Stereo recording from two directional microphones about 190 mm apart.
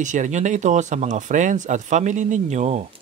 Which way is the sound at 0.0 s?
40° right (ahead or behind).